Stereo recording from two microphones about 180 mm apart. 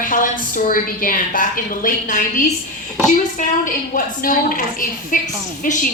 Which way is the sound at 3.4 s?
50° left (ahead or behind).